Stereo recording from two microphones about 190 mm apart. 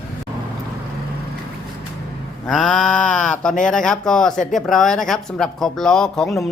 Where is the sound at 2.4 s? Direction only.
5° left (ahead or behind).